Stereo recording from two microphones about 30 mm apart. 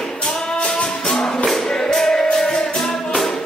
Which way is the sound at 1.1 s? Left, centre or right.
Left.